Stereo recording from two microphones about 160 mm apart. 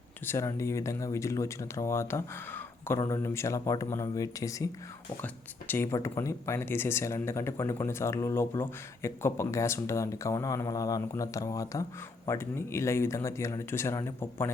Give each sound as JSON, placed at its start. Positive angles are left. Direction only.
{"t": 0.3, "sound": "speech", "side_deg": 20}